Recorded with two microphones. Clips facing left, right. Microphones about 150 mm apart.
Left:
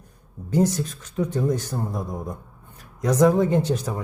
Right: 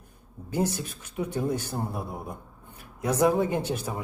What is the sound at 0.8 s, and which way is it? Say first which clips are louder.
Speech: left 6 dB; 10° right (ahead or behind).